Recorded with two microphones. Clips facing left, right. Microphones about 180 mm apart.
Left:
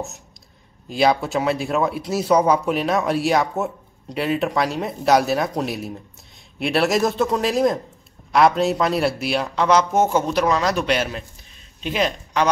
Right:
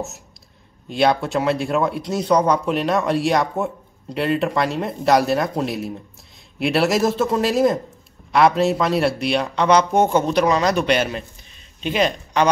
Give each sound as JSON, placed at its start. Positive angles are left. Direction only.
{"t": 0.8, "sound": "speech", "side_deg": 0}